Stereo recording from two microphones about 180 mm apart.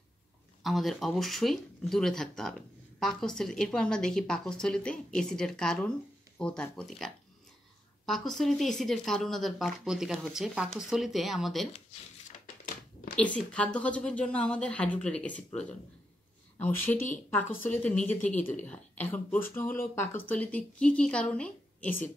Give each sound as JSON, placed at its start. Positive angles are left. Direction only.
{"t": 0.7, "sound": "a woman's voice", "side_deg": 0}
{"t": 11.7, "sound": "a sound", "side_deg": 40}
{"t": 13.1, "sound": "speech", "side_deg": 5}